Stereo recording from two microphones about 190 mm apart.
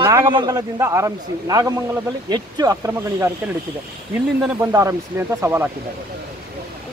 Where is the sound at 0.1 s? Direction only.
20° right (ahead or behind).